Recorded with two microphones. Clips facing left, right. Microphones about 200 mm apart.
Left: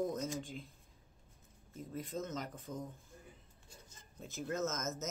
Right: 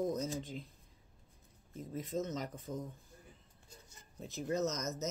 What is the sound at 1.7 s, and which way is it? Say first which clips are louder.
Speech: right 3 dB; centre (ahead or behind).